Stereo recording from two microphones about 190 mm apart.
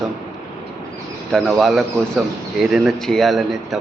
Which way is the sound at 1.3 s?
Centre (ahead or behind).